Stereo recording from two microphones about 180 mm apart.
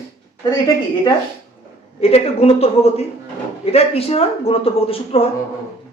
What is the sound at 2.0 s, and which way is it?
A man's voice, 35° left (ahead or behind).